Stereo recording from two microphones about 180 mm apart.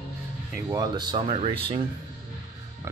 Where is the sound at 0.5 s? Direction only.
20° right (ahead or behind).